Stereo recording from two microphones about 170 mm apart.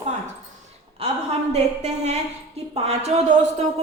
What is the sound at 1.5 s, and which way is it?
A woman's voice, 40° right (ahead or behind).